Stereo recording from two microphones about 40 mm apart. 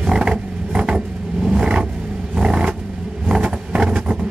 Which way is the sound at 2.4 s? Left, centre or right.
Right.